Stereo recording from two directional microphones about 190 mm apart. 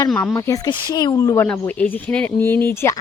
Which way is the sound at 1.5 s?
5° left (ahead or behind).